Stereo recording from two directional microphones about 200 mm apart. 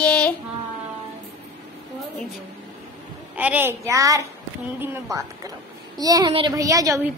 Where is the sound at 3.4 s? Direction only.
10° right (ahead or behind).